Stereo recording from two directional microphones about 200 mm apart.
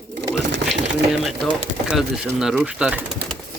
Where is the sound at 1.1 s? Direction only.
5° right (ahead or behind).